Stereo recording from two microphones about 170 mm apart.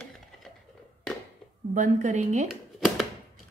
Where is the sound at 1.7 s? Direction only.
45° right (ahead or behind).